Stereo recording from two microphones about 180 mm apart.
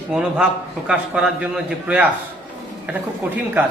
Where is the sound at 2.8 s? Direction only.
10° right (ahead or behind).